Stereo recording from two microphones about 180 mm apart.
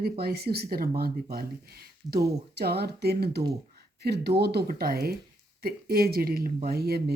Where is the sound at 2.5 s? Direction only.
60° right (ahead or behind).